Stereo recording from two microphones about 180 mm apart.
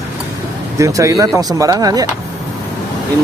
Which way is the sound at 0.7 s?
15° right (ahead or behind).